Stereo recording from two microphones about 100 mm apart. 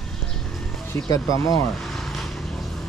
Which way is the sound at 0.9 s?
35° left (ahead or behind).